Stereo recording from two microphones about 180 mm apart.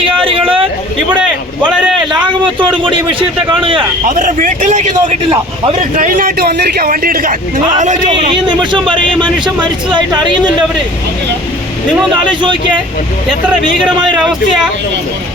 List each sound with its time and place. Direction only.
0.0 s a sound: 30° right (ahead or behind)
1.2 s speech: 5° right (ahead or behind)
2.2 s a man's voice: 25° right (ahead or behind)
4.1 s a man's voice: 45° right (ahead or behind)
6.0 s a man's voice: 50° right (ahead or behind)
8.1 s a man's voice: 25° right (ahead or behind)
9.0 s a man's voice: 5° left (ahead or behind)
9.6 s a man's voice: 25° right (ahead or behind)
12.1 s a man's voice: 25° right (ahead or behind)